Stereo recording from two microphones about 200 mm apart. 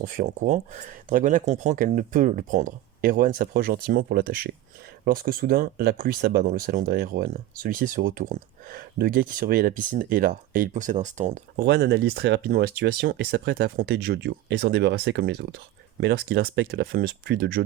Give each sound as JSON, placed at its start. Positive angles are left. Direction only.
{"t": 0.0, "sound": "speech", "side_deg": -40}
{"t": 11.6, "sound": "speech", "side_deg": -55}